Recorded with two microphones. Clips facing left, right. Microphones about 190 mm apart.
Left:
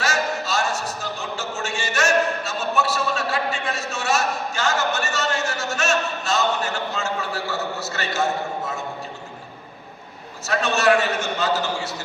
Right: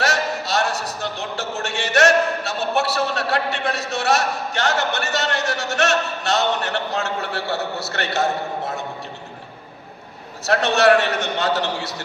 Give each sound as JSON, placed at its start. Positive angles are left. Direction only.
{"t": 0.0, "sound": "a sound", "side_deg": -65}
{"t": 5.7, "sound": "a man's voice", "side_deg": -65}
{"t": 7.5, "sound": "a man's voice", "side_deg": -35}
{"t": 7.9, "sound": "a man's voice", "side_deg": -65}
{"t": 10.4, "sound": "a man's voice", "side_deg": -65}